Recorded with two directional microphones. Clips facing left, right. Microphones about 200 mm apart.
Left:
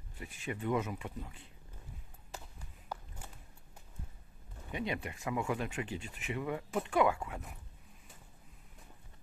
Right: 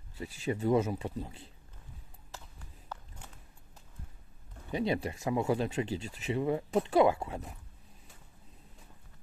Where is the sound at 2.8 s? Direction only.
10° left (ahead or behind).